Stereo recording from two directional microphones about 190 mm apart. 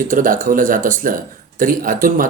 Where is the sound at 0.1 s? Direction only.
45° right (ahead or behind).